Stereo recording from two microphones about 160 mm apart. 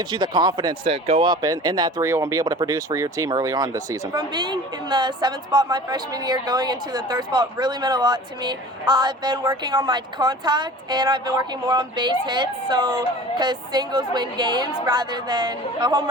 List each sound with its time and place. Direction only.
0.0 s speech: 25° right (ahead or behind)
0.9 s speech: 40° right (ahead or behind)
1.3 s speech: 25° right (ahead or behind)